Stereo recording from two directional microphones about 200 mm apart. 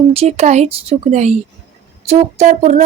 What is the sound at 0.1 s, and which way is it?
A woman's voice, 30° right (ahead or behind).